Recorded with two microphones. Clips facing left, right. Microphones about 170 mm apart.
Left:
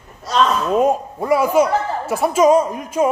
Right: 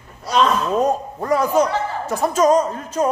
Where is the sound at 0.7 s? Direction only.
10° left (ahead or behind).